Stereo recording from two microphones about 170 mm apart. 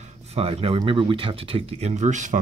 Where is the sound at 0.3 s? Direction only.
35° right (ahead or behind).